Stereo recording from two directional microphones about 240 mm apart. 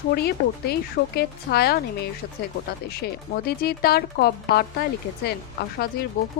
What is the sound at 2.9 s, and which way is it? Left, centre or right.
Speech, left.